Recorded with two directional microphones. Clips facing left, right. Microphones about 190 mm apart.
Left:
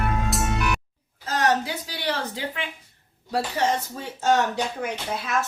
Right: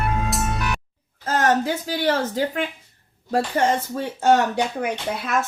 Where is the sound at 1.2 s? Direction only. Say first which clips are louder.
Right 3 dB; 50° right (ahead or behind).